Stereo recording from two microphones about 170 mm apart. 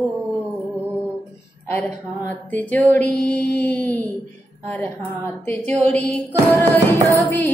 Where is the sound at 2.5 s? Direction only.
10° left (ahead or behind).